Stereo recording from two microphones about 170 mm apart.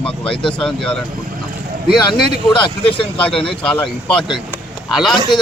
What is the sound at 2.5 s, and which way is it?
Speech, 30° left (ahead or behind).